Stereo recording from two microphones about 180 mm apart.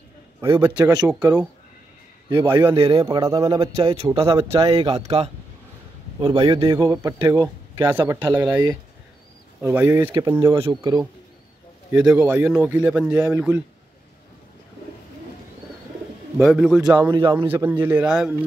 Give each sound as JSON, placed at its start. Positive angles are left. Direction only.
{"t": 0.4, "sound": "a man's voice", "side_deg": -15}
{"t": 3.7, "sound": "a man's voice", "side_deg": -35}
{"t": 6.1, "sound": "a man's voice", "side_deg": -30}
{"t": 6.6, "sound": "a man's voice", "side_deg": -20}
{"t": 10.5, "sound": "a man's voice", "side_deg": -25}
{"t": 11.9, "sound": "speech", "side_deg": -5}
{"t": 16.3, "sound": "speech", "side_deg": 0}
{"t": 17.1, "sound": "speech", "side_deg": -20}